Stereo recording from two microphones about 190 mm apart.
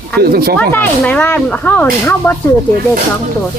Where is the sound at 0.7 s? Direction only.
5° left (ahead or behind).